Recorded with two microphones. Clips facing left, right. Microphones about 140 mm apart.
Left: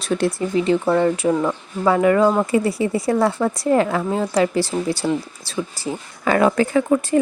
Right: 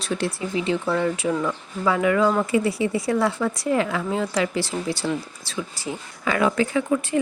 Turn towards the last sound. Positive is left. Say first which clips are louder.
# left 5 dB
turn(degrees=45)  # may be behind; listen again after turning